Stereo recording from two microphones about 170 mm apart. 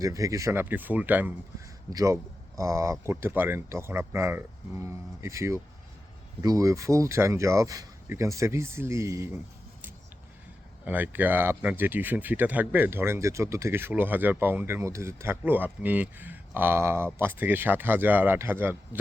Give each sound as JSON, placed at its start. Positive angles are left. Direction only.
{"t": 0.0, "sound": "speech", "side_deg": -20}
{"t": 1.9, "sound": "a man's voice", "side_deg": -20}
{"t": 10.8, "sound": "speech", "side_deg": -10}